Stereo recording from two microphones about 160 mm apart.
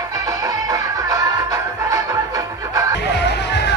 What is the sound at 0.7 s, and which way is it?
Music, 25° right (ahead or behind).